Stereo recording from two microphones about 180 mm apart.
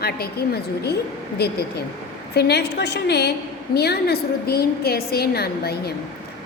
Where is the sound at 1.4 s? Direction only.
65° left (ahead or behind).